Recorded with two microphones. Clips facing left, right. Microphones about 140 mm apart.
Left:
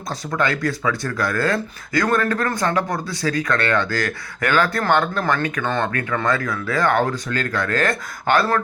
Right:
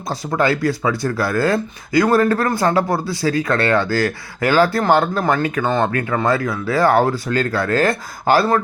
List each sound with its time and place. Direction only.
0.3 s speech: 30° right (ahead or behind)